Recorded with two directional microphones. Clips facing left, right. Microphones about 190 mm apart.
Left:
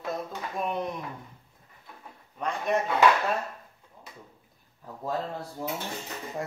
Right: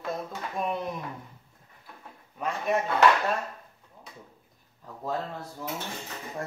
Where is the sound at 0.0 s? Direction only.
Centre (ahead or behind).